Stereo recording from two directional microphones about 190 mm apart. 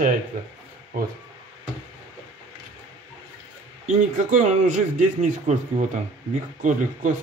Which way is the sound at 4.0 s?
40° right (ahead or behind).